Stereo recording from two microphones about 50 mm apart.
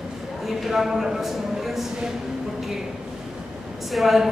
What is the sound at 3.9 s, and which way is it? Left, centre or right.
Speech, centre.